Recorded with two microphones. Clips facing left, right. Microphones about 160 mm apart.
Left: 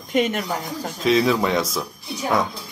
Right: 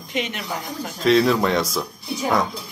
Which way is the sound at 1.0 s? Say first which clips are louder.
Right 2 dB; centre (ahead or behind).